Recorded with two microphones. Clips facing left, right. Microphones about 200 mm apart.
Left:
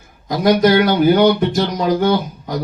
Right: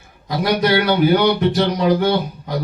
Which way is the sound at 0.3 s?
45° left (ahead or behind).